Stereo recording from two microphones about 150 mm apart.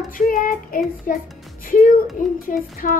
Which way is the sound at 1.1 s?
65° left (ahead or behind).